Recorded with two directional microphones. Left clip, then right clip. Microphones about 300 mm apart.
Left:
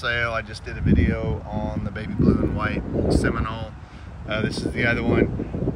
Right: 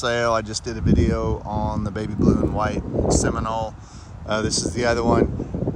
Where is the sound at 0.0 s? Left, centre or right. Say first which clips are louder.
Right 3 dB; centre.